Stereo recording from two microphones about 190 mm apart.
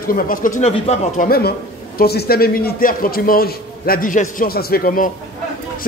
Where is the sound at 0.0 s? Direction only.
50° left (ahead or behind).